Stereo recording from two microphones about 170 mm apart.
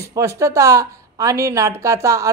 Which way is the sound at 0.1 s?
20° right (ahead or behind).